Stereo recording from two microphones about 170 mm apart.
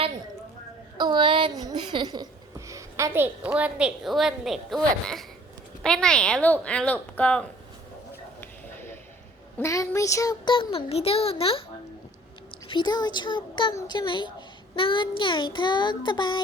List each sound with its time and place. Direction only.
0.9 s a woman's voice: 25° right (ahead or behind); by 7.4 s 10° left (ahead or behind)
8.4 s a sound: 15° left (ahead or behind)
9.6 s a child's voice: 15° left (ahead or behind); by 11.6 s 35° left (ahead or behind)
12.6 s child singing: 25° left (ahead or behind)